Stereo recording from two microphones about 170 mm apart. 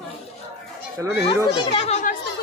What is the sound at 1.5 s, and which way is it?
Speech, 30° left (ahead or behind).